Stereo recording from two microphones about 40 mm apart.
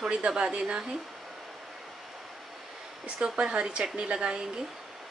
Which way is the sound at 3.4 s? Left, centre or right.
Right.